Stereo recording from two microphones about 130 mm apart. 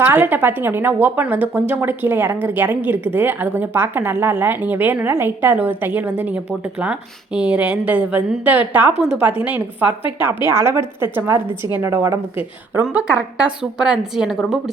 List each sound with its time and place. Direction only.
0.0 s a woman's voice: 15° right (ahead or behind)
12.8 s speech: 10° right (ahead or behind)